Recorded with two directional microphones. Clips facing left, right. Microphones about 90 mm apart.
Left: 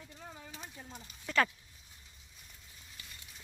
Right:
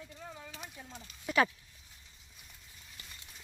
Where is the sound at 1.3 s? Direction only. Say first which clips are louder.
Right 2 dB; 10° right (ahead or behind).